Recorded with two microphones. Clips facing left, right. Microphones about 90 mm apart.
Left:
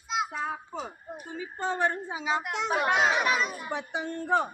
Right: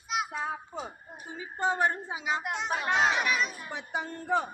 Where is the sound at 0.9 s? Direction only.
15° right (ahead or behind).